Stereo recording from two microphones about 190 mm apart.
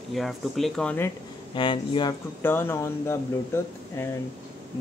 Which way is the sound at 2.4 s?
10° left (ahead or behind).